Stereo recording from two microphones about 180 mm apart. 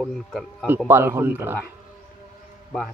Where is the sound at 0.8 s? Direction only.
15° right (ahead or behind).